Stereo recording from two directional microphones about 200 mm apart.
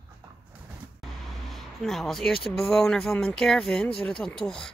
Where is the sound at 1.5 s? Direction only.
Centre (ahead or behind).